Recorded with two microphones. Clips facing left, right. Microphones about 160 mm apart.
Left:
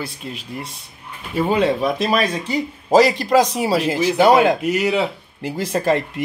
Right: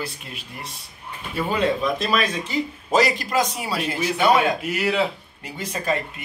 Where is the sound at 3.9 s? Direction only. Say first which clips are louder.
Left 4 dB; 90° left.